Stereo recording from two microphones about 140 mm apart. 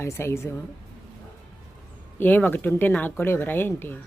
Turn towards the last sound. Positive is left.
turn(degrees=15)  # may be behind; listen again after turning